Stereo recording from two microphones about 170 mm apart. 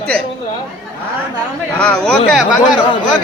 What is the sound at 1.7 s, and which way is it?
Speech, 5° left (ahead or behind).